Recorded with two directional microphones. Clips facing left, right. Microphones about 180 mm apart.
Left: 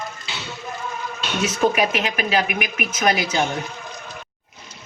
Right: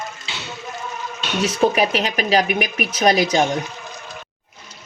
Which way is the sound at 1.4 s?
35° right (ahead or behind).